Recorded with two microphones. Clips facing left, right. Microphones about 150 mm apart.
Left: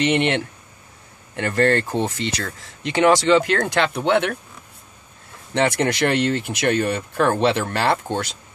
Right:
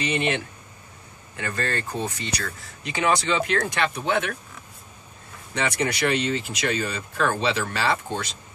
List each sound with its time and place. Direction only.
0.0 s speech: 75° left (ahead or behind)
2.0 s speech: 90° left; by 4.3 s 70° left (ahead or behind)
5.5 s speech: 70° left (ahead or behind)